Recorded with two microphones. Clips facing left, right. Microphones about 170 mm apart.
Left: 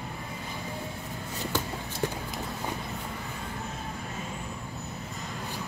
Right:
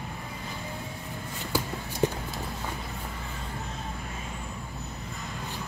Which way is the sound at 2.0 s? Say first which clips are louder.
Right 5 dB; 20° right (ahead or behind).